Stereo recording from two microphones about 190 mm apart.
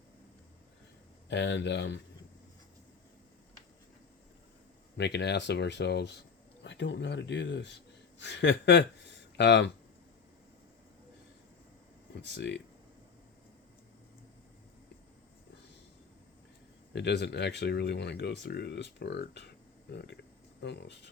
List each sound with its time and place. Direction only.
1.3 s speech: 70° left (ahead or behind)
4.9 s speech: 65° left (ahead or behind)
12.3 s speech: 60° left (ahead or behind)
16.9 s speech: 60° left (ahead or behind)